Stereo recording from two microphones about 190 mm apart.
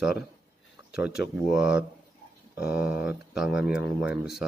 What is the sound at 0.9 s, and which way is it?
Speech, 5° right (ahead or behind).